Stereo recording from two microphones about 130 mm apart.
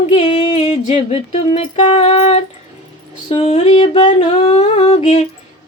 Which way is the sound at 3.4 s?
60° left (ahead or behind).